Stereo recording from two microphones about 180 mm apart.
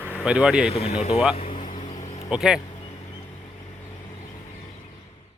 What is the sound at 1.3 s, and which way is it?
Vehicle, 35° left (ahead or behind).